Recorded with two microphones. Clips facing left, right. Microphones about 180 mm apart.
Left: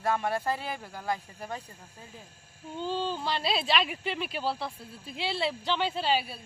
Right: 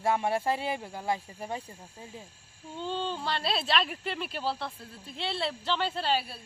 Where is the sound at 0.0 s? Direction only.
20° right (ahead or behind).